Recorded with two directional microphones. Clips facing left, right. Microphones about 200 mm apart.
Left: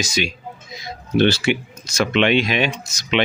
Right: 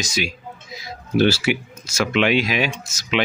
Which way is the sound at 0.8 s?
5° right (ahead or behind).